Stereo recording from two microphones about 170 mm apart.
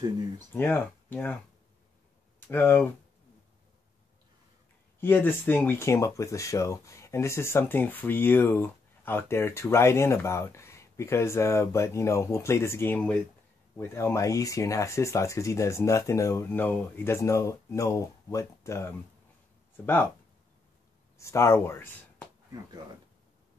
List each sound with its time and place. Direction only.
0.5 s speech: 10° left (ahead or behind)
2.4 s speech: 10° left (ahead or behind)
5.0 s speech: 10° left (ahead or behind)
21.2 s speech: 15° left (ahead or behind)